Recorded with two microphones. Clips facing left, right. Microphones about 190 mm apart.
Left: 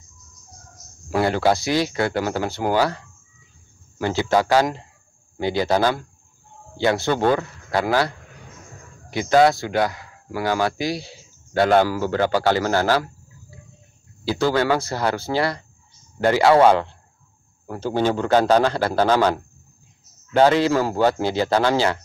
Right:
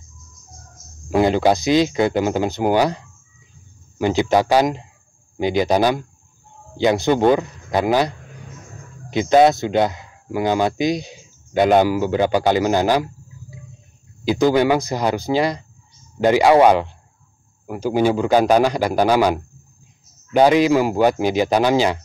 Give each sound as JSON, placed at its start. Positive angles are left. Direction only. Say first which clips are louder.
{"t": 1.1, "sound": "speech", "louder": "right 3 dB", "side_deg": -20}
{"t": 4.0, "sound": "speech", "louder": "right 3 dB", "side_deg": -15}
{"t": 9.1, "sound": "speech", "louder": "right 3 dB", "side_deg": -20}